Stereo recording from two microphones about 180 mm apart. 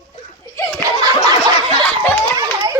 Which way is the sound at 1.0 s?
20° right (ahead or behind).